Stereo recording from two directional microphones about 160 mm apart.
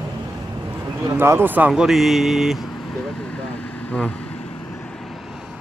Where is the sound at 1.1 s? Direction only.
15° right (ahead or behind).